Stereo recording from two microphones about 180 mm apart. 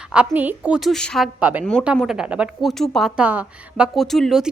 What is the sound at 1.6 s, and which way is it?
A woman's voice, 5° left (ahead or behind).